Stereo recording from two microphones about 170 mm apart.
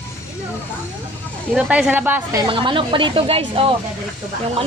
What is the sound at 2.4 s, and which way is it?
Speech, 30° right (ahead or behind).